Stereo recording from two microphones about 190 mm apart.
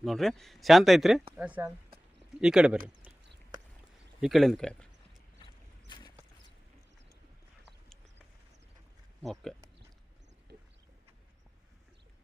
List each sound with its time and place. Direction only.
0.0 s speech: centre (ahead or behind)
4.2 s speech: centre (ahead or behind)
5.9 s clip-clop: 25° left (ahead or behind)
9.2 s speech: centre (ahead or behind)